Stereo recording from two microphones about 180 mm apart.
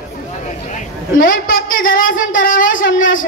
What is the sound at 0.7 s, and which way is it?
A man's voice, 45° left (ahead or behind).